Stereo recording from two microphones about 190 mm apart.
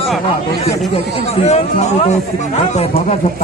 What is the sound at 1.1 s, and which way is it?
Speech, 35° left (ahead or behind).